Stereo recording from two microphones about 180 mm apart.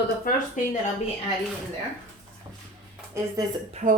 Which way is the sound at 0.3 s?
45° left (ahead or behind).